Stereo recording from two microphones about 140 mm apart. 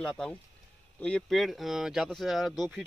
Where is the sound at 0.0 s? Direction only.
5° left (ahead or behind).